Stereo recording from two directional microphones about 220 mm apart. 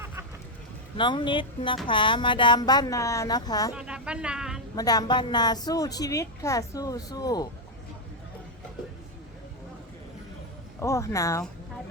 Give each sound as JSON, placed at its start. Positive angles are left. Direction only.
{"t": 0.9, "sound": "speech", "side_deg": 20}
{"t": 3.8, "sound": "a woman's voice", "side_deg": -5}
{"t": 4.7, "sound": "a woman's voice", "side_deg": 15}
{"t": 10.8, "sound": "a woman's voice", "side_deg": 15}